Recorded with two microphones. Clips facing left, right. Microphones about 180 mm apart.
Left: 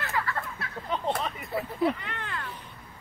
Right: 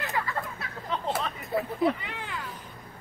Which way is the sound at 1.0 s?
5° right (ahead or behind).